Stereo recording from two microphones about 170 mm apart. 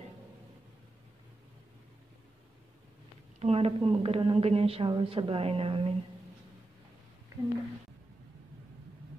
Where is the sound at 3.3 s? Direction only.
35° right (ahead or behind).